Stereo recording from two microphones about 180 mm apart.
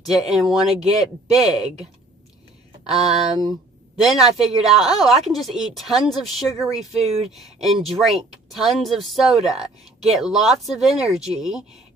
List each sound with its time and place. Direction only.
0.0 s a woman's voice: centre (ahead or behind)
2.9 s a woman's voice: centre (ahead or behind)
7.0 s speech: 35° right (ahead or behind)
7.2 s a woman's voice: centre (ahead or behind)